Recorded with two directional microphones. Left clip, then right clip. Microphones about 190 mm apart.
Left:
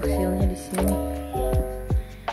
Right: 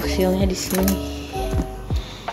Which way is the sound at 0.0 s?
10° left (ahead or behind).